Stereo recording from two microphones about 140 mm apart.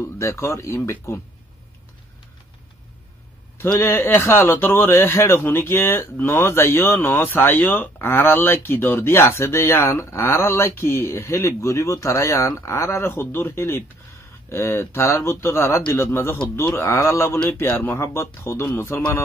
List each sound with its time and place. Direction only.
0.0 s a man's voice: 20° left (ahead or behind)
3.6 s a man's voice: 15° left (ahead or behind)